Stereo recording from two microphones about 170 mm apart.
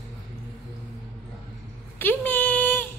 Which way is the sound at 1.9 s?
10° left (ahead or behind).